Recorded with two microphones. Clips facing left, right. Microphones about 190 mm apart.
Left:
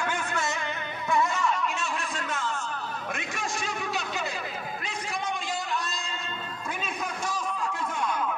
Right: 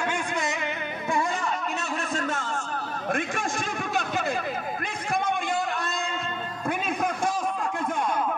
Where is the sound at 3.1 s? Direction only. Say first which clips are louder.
Right 5 dB; 50° right (ahead or behind).